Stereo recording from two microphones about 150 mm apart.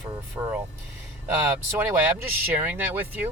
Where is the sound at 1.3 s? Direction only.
10° right (ahead or behind).